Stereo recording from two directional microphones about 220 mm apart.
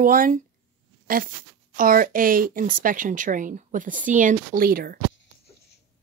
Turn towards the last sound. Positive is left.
turn(degrees=-40)  # may be behind; listen again after turning